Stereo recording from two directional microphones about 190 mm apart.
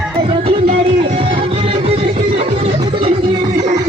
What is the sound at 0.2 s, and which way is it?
Music, 30° right (ahead or behind).